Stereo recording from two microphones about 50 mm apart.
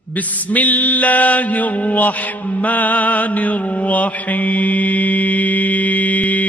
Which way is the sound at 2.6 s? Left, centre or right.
Left.